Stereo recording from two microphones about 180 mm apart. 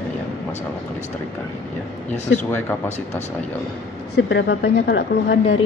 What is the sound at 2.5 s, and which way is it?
Speech, 10° left (ahead or behind).